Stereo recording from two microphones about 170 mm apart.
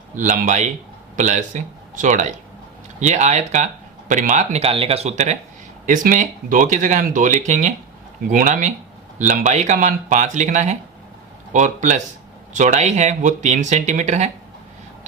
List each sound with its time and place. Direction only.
0.2 s speech: 45° right (ahead or behind)